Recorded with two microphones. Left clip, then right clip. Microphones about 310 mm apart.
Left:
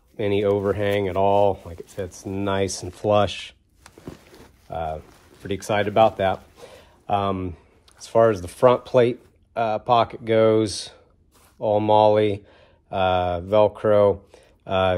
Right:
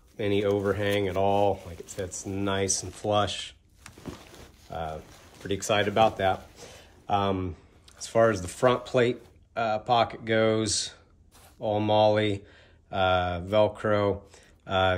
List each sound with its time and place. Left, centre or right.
0.2 s speech: centre
4.6 s speech: centre